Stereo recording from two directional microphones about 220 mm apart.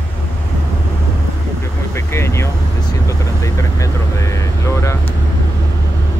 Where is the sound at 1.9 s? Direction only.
10° left (ahead or behind).